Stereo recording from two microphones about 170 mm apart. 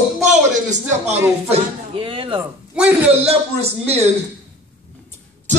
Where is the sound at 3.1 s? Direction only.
35° right (ahead or behind).